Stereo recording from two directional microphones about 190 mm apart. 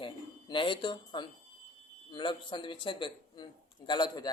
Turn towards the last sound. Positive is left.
turn(degrees=20)  # may be behind; listen again after turning